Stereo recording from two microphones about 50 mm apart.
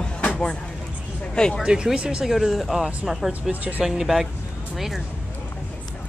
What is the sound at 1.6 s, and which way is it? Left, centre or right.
Speech, centre.